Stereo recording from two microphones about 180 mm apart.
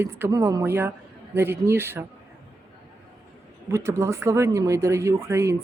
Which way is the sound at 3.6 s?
15° right (ahead or behind).